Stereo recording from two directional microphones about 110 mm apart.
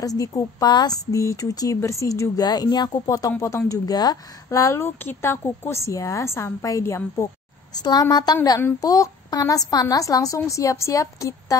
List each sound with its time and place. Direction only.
0.0 s speech: 30° left (ahead or behind)
7.7 s a woman's voice: 40° left (ahead or behind)
8.5 s speech: 20° left (ahead or behind)
8.8 s a woman's voice: 30° left (ahead or behind)